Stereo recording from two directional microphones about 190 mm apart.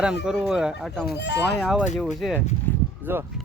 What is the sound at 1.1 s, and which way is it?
Speech, 60° left (ahead or behind).